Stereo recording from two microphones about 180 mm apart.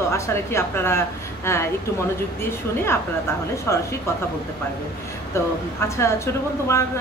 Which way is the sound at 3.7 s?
15° left (ahead or behind).